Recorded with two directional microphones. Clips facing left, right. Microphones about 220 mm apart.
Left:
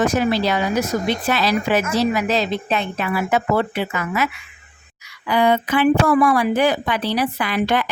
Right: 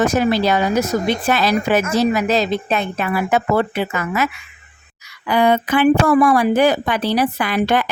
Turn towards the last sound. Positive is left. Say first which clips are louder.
# right 2 dB
turn(degrees=-45)  # may be behind; listen again after turning